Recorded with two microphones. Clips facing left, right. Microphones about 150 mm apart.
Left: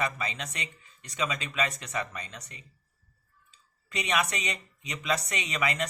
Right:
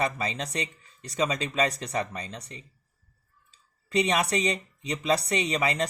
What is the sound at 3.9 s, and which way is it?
Speech, 35° right (ahead or behind).